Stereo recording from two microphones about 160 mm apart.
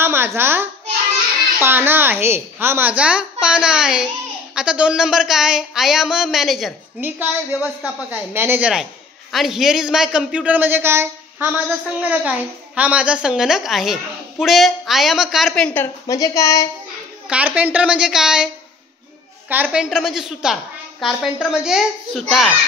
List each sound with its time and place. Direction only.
0.0 s a child's voice: 15° right (ahead or behind); by 16.6 s 20° left (ahead or behind)
17.3 s a man's voice: 10° right (ahead or behind)
19.5 s a woman's voice: 10° right (ahead or behind)